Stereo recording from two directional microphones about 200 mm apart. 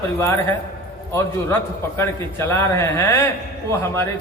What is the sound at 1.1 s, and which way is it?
A man's voice, 10° left (ahead or behind).